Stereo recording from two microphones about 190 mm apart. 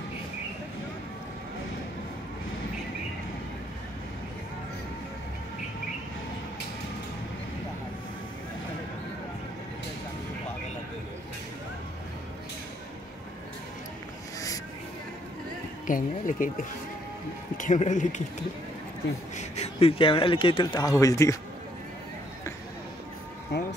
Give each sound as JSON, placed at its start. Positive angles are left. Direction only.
{"t": 15.9, "sound": "a man's voice", "side_deg": 45}
{"t": 19.3, "sound": "speech", "side_deg": 35}
{"t": 23.5, "sound": "a sound", "side_deg": 65}